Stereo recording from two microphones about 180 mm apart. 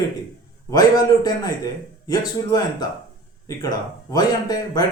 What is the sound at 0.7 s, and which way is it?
A man's voice, 20° left (ahead or behind).